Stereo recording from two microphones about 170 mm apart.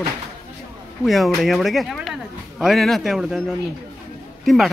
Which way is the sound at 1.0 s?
Centre (ahead or behind).